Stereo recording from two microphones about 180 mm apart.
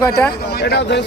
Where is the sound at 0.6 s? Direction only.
70° left (ahead or behind).